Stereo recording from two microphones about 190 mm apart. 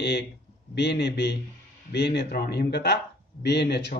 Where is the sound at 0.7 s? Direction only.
65° left (ahead or behind).